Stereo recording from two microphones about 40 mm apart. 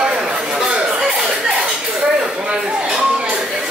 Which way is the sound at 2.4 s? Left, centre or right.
Right.